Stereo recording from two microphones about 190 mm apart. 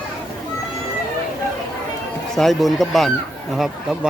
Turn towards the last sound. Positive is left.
turn(degrees=0)  # may be behind; listen again after turning